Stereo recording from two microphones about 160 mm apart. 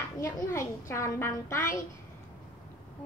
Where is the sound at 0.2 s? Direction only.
15° left (ahead or behind).